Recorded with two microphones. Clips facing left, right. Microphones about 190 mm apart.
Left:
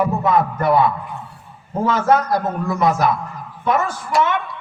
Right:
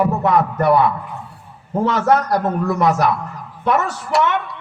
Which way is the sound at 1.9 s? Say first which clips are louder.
Even; 70° right (ahead or behind).